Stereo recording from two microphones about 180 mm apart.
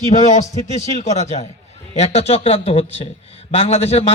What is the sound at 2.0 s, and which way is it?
A man's voice, 35° left (ahead or behind).